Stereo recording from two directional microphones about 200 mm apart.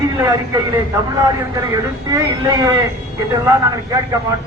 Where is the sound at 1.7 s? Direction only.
15° right (ahead or behind).